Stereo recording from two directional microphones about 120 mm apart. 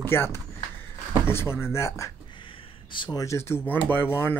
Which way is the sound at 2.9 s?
40° left (ahead or behind).